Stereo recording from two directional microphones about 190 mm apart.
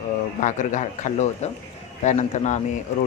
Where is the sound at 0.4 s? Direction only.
40° left (ahead or behind).